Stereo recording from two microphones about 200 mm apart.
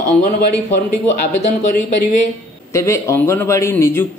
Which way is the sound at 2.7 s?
15° left (ahead or behind).